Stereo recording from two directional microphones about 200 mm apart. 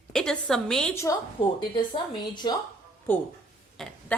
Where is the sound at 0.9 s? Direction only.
20° left (ahead or behind).